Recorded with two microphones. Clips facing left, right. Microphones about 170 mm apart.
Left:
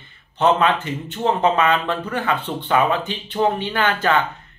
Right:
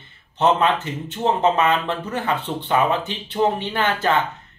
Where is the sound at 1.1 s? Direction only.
25° right (ahead or behind).